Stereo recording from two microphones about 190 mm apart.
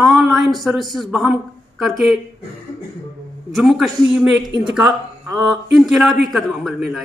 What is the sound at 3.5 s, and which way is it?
A man's voice, centre (ahead or behind).